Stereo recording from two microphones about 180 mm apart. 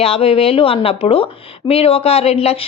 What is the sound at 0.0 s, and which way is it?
Speech, 30° left (ahead or behind).